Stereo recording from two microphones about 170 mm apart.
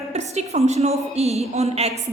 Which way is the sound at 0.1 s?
40° right (ahead or behind).